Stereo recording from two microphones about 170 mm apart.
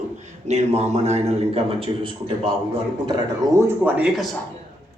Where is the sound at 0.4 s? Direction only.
40° right (ahead or behind).